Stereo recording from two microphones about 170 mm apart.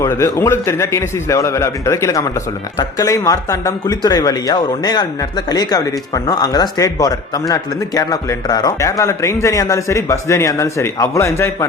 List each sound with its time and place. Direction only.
0.0 s a man's voice: 15° left (ahead or behind)